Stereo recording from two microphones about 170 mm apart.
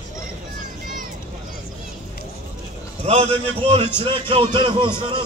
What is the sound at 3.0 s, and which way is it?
A man's voice, 35° right (ahead or behind).